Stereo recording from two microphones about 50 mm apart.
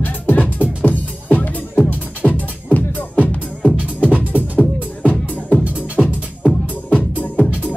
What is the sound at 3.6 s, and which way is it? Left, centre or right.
Music, right.